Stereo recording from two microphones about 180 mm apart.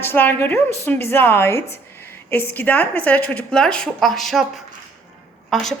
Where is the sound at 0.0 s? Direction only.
10° left (ahead or behind).